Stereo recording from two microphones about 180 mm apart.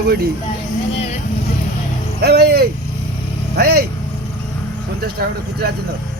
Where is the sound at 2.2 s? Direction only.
65° right (ahead or behind).